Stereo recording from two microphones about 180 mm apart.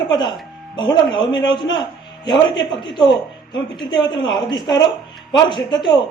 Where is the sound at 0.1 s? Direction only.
25° left (ahead or behind).